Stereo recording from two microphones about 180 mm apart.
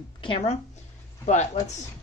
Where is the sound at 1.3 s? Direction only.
40° left (ahead or behind).